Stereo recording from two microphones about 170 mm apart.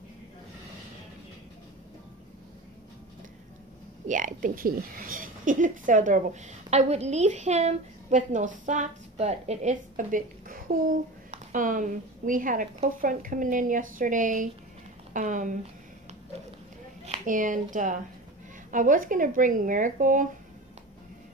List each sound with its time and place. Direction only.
4.1 s a woman's voice: 50° right (ahead or behind)
17.0 s a woman's voice: 45° right (ahead or behind)